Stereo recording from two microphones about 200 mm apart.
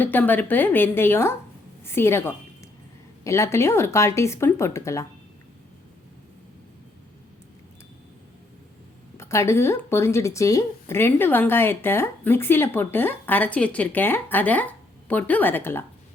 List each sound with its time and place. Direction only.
0.0 s speech: 10° left (ahead or behind)
9.1 s speech: 15° left (ahead or behind)